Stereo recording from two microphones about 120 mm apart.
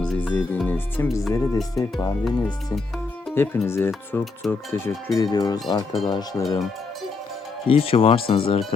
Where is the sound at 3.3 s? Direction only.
20° left (ahead or behind).